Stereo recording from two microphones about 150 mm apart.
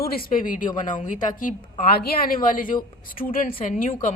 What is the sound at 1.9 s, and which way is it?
A woman's voice, 85° left.